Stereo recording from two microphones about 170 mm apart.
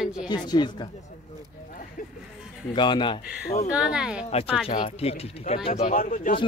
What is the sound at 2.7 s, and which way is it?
Speech, 25° left (ahead or behind).